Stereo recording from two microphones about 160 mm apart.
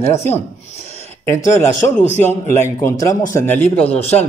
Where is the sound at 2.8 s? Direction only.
20° left (ahead or behind).